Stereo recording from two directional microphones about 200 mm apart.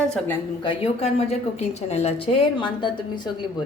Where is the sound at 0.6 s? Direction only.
30° left (ahead or behind).